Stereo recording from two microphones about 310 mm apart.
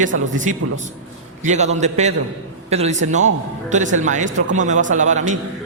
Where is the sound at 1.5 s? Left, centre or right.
Right.